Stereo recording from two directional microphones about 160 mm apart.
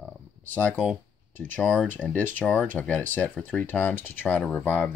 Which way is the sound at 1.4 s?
10° left (ahead or behind).